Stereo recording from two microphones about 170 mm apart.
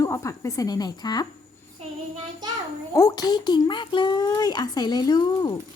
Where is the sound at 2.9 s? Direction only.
20° left (ahead or behind).